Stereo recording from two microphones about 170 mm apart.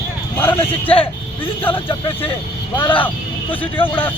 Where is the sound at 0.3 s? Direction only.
15° left (ahead or behind).